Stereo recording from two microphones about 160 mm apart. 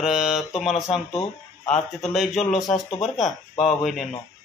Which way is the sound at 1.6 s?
45° left (ahead or behind).